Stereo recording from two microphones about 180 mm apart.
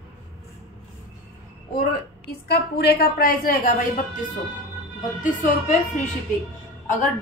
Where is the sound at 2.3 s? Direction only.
65° left (ahead or behind); by 4.3 s 45° left (ahead or behind).